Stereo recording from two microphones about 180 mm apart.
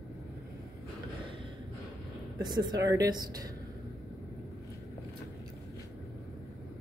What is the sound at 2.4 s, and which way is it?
A woman's voice, 25° right (ahead or behind).